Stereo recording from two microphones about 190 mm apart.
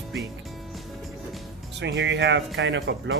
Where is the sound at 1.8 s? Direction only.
65° right (ahead or behind).